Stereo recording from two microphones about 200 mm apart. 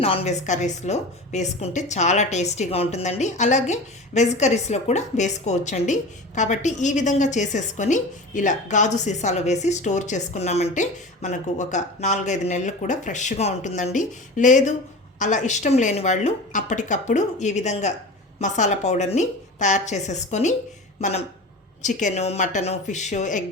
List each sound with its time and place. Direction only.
0.0 s a woman's voice: 30° left (ahead or behind)